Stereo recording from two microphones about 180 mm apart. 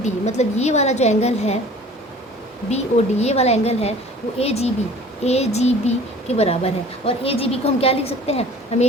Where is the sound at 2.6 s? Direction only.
35° left (ahead or behind).